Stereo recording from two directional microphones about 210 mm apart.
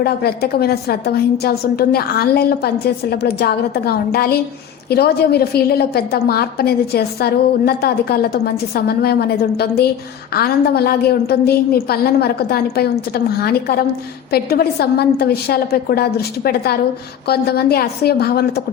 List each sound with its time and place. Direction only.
0.0 s a woman's voice: 50° left (ahead or behind)